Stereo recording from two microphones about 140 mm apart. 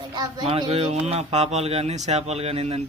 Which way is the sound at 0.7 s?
45° right (ahead or behind).